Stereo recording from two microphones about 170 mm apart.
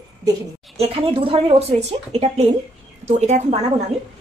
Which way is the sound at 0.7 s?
35° right (ahead or behind).